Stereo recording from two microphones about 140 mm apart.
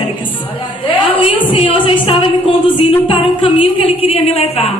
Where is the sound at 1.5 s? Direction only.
40° left (ahead or behind).